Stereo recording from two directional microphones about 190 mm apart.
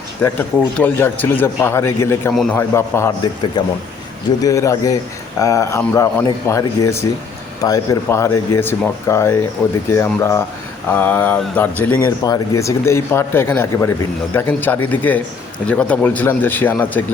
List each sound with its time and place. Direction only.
0.8 s speech: 10° left (ahead or behind)
2.3 s a man's voice: centre (ahead or behind)
2.6 s speech: 15° left (ahead or behind)
4.4 s speech: 20° left (ahead or behind)